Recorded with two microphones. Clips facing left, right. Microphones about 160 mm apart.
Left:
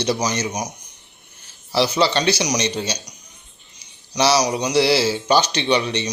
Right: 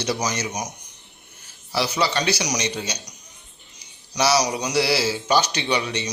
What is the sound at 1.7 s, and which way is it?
A man's voice, 30° left (ahead or behind).